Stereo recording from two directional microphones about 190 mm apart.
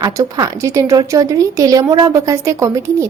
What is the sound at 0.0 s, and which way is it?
A woman's voice, 20° right (ahead or behind).